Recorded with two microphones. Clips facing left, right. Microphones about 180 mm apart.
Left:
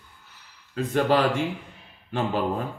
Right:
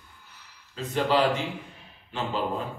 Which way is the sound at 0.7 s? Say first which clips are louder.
Left 3 dB; 50° left (ahead or behind).